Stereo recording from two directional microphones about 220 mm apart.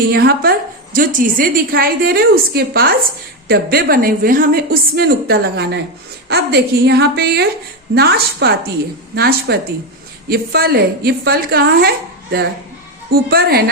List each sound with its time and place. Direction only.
0.1 s a woman's voice: 45° right (ahead or behind)